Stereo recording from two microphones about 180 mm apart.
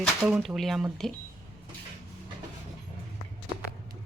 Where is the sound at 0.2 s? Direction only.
5° right (ahead or behind).